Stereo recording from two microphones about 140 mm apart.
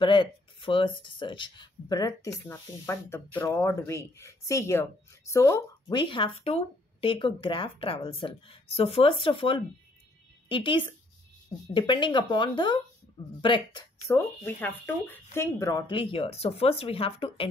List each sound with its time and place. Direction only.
0.0 s speech: 35° left (ahead or behind); by 5.9 s 20° left (ahead or behind)
5.9 s speech: 35° left (ahead or behind)
14.0 s speech: 15° left (ahead or behind)
15.9 s speech: 40° left (ahead or behind)